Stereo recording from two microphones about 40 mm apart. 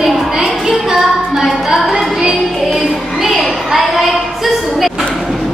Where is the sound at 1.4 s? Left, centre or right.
Centre.